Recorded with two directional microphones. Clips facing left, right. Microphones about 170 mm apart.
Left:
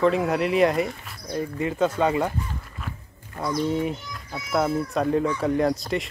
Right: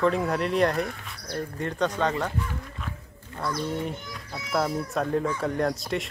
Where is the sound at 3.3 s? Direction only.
15° left (ahead or behind).